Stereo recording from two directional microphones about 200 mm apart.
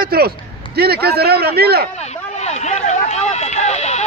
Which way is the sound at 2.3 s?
35° left (ahead or behind).